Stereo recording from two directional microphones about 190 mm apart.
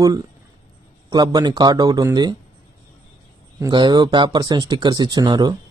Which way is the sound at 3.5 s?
20° right (ahead or behind).